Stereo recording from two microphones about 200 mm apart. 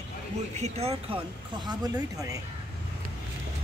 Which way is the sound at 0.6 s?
30° right (ahead or behind).